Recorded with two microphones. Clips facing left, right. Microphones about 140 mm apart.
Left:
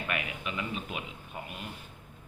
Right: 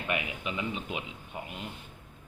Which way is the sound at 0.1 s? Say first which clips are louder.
Right 4 dB; 25° right (ahead or behind).